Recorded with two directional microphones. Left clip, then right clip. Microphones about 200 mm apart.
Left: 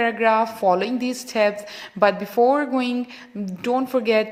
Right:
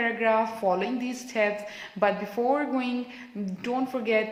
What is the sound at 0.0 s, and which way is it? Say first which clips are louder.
A woman's voice: left 6 dB; 50° left (ahead or behind).